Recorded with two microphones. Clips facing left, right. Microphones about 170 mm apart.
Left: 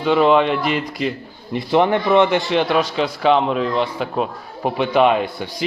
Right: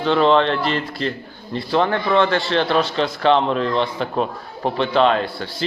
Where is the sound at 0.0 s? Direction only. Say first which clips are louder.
Left 1 dB; 10° left (ahead or behind).